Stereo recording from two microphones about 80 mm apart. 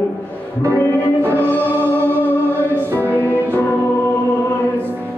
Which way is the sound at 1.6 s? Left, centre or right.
Right.